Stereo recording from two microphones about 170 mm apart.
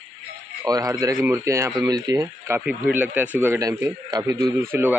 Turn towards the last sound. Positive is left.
turn(degrees=-15)  # may be behind; listen again after turning